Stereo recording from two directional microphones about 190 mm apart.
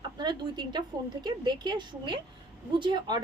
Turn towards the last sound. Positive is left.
turn(degrees=-20)  # may be behind; listen again after turning